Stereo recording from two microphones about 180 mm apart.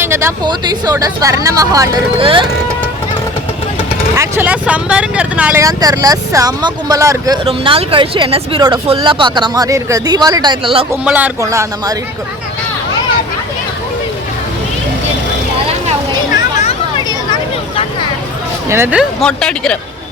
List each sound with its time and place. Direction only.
0.0 s speech: 15° right (ahead or behind)
2.1 s speech: 30° right (ahead or behind)
4.1 s speech: 15° right (ahead or behind)
5.5 s speech: 20° right (ahead or behind)
7.4 s speech: 30° right (ahead or behind)
11.0 s speech: 5° right (ahead or behind)
11.3 s speech: 15° right (ahead or behind)
18.7 s speech: 10° right (ahead or behind)
19.2 s speech: 5° left (ahead or behind)